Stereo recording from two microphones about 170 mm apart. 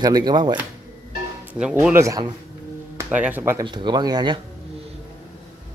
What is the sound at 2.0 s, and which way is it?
Speech, 20° right (ahead or behind).